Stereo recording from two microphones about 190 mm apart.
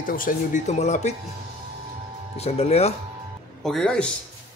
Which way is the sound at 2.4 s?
35° left (ahead or behind).